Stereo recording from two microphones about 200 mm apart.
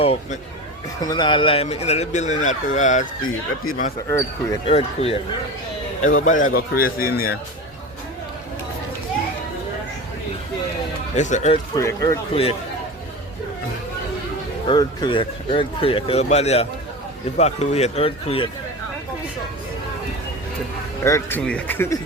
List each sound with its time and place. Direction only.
0.0 s speech: 30° left (ahead or behind)
3.2 s speech: 90° left
4.6 s speech: 30° left (ahead or behind)
6.1 s a man's voice: 40° left (ahead or behind)
11.1 s speech: 35° left (ahead or behind)
11.5 s speech: 15° left (ahead or behind)
12.3 s speech: 30° left (ahead or behind)
14.7 s speech: 25° left (ahead or behind)
21.0 s speech: 10° left (ahead or behind)